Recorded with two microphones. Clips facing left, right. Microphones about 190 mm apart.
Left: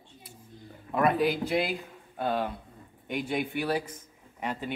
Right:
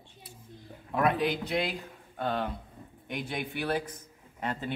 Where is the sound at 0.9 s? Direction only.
Centre (ahead or behind).